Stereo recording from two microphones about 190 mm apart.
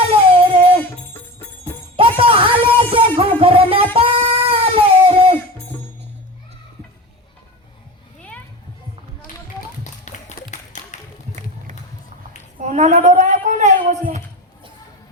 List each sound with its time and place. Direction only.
0.1 s music: 30° right (ahead or behind)
0.8 s music: 10° left (ahead or behind)
2.0 s music: 30° right (ahead or behind)
3.9 s cat: 30° right (ahead or behind)
9.8 s tap: 40° left (ahead or behind)
12.5 s a sound: 40° right (ahead or behind)